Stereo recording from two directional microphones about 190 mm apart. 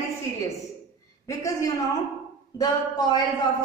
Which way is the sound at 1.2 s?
15° left (ahead or behind).